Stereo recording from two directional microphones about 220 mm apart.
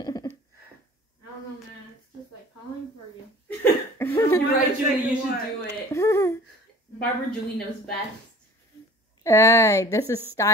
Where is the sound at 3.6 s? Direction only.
10° left (ahead or behind).